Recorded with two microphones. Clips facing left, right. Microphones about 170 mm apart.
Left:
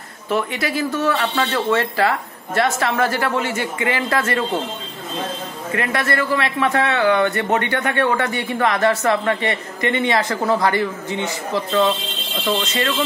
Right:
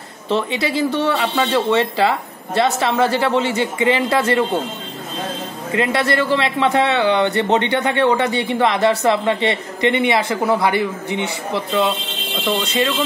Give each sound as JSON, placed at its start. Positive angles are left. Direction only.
{"t": 0.3, "sound": "speech", "side_deg": -20}
{"t": 5.7, "sound": "speech", "side_deg": -20}
{"t": 12.4, "sound": "speech", "side_deg": -15}